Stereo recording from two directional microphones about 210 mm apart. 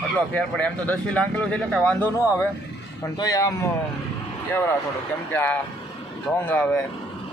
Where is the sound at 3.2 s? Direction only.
15° left (ahead or behind).